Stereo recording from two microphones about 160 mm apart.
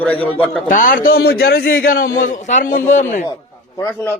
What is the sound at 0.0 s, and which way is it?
Speech, 10° left (ahead or behind).